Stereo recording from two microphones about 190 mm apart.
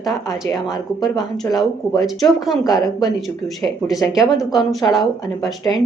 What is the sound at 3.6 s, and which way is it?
A woman's voice, centre (ahead or behind).